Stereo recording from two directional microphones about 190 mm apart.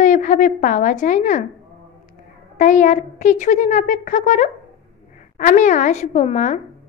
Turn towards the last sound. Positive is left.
turn(degrees=40)  # may be behind; listen again after turning